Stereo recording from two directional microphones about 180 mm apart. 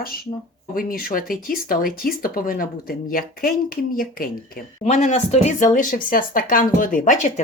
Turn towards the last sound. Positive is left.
turn(degrees=45)  # may be behind; listen again after turning